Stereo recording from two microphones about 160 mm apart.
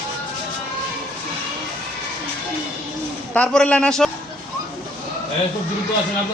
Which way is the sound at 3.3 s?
5° left (ahead or behind).